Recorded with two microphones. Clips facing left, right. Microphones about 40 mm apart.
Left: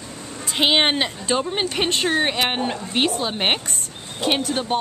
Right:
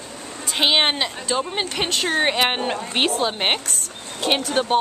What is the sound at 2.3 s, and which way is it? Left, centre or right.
Speech, centre.